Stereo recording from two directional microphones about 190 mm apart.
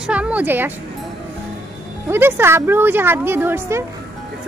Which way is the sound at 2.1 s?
10° right (ahead or behind).